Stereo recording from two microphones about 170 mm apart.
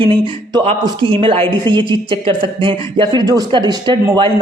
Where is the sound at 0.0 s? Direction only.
30° right (ahead or behind).